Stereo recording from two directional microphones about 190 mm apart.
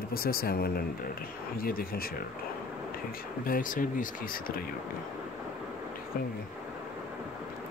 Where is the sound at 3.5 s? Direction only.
45° left (ahead or behind).